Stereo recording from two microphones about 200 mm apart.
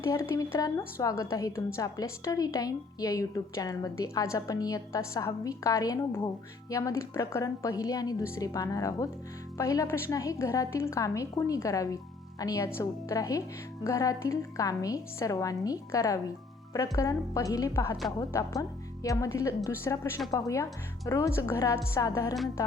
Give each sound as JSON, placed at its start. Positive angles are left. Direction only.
{"t": 0.0, "sound": "a woman's voice", "side_deg": 15}